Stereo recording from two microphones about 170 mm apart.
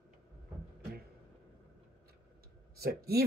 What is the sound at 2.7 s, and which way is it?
Speech, 65° right (ahead or behind).